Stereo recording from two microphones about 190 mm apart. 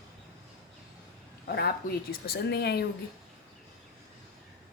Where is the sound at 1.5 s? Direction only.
55° left (ahead or behind).